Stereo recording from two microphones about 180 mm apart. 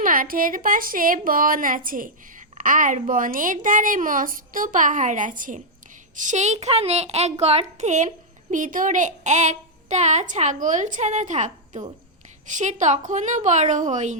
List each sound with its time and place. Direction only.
0.0 s a woman's voice: 50° right (ahead or behind)